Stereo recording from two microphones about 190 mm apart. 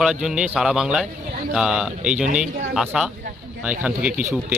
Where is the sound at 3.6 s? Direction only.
5° right (ahead or behind).